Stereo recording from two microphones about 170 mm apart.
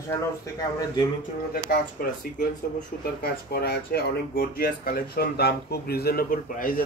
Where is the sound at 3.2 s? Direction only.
65° left (ahead or behind).